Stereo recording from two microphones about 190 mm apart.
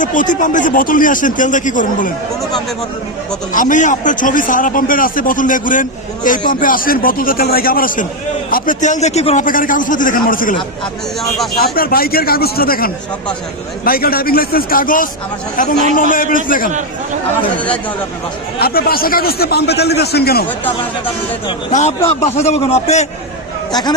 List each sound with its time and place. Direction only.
0.0 s a man's voice: 45° left (ahead or behind)
3.5 s a man's voice: 45° left (ahead or behind)
11.7 s a man's voice: 50° left (ahead or behind)
18.6 s a man's voice: 50° left (ahead or behind)
21.7 s a man's voice: 40° left (ahead or behind)